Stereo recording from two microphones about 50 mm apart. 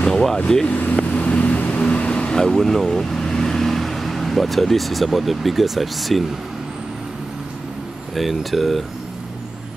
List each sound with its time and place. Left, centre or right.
0.0 s vehicle: centre
0.7 s vehicle: left
2.3 s speech: centre
8.2 s speech: centre